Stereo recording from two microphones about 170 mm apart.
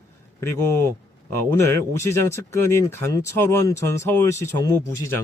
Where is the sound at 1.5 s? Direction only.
15° left (ahead or behind).